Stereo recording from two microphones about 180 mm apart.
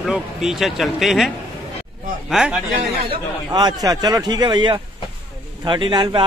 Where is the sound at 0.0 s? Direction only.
Centre (ahead or behind).